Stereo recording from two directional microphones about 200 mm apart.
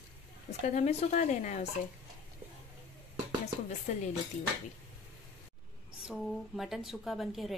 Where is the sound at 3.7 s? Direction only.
35° left (ahead or behind).